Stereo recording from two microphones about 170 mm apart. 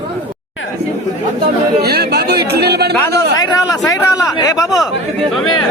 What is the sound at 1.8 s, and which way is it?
Speech, 65° right (ahead or behind).